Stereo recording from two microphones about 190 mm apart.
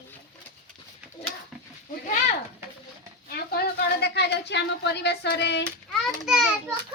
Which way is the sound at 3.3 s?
55° left (ahead or behind).